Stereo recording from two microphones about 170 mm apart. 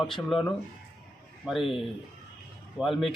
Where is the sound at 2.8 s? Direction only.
Centre (ahead or behind).